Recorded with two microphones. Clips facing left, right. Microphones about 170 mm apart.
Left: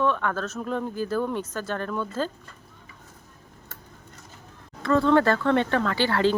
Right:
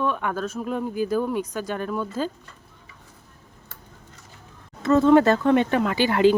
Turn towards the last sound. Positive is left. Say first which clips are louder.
# right 4 dB
turn(degrees=-15)  # may be behind; listen again after turning